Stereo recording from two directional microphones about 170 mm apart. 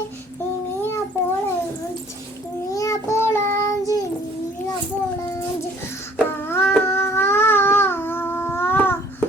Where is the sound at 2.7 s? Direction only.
20° left (ahead or behind).